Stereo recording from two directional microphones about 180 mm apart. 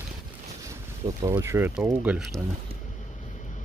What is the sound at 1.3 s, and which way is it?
Speech, 15° right (ahead or behind).